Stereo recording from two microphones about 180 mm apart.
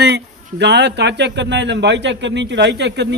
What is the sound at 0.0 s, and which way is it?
A man's voice, 70° right (ahead or behind).